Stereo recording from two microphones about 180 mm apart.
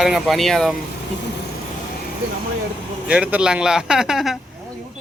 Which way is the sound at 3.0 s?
5° right (ahead or behind).